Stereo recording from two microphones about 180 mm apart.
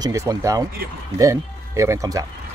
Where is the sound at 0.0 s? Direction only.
15° right (ahead or behind).